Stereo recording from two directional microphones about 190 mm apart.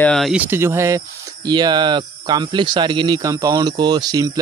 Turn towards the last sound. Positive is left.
turn(degrees=-20)  # may be behind; listen again after turning